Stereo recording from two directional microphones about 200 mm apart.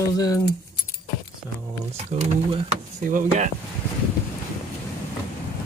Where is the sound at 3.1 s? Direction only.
45° right (ahead or behind).